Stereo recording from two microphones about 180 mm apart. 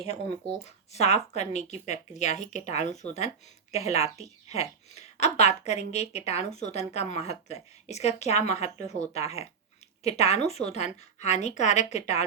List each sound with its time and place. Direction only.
0.6 s speech: 35° left (ahead or behind)